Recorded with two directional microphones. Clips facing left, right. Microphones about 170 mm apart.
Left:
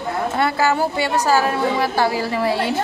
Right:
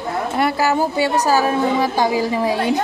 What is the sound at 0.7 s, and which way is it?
A woman's voice, 15° right (ahead or behind).